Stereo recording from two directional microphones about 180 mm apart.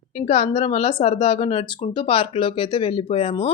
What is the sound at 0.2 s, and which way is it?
Speech, 35° left (ahead or behind).